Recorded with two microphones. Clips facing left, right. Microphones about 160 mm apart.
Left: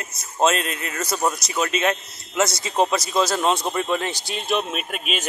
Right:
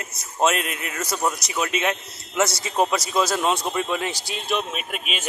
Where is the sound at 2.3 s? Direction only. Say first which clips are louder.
Left 1 dB; 20° left (ahead or behind).